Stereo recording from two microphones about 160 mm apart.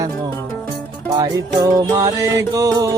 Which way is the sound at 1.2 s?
20° right (ahead or behind).